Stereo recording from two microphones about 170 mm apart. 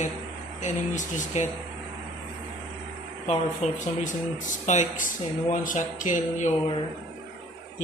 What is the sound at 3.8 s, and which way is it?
Speech, 50° left (ahead or behind).